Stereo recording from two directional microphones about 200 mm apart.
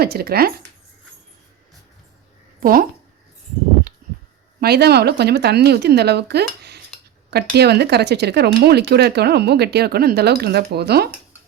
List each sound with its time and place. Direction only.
0.0 s speech: 50° right (ahead or behind)
2.6 s speech: 45° right (ahead or behind)
4.6 s speech: 55° right (ahead or behind)